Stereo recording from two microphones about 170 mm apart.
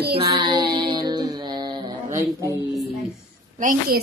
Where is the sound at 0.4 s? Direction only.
30° right (ahead or behind).